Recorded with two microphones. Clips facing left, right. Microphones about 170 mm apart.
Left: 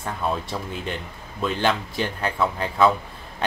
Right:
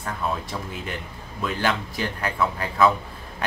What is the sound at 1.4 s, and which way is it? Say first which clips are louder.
Speech: left 2 dB; 25° left (ahead or behind).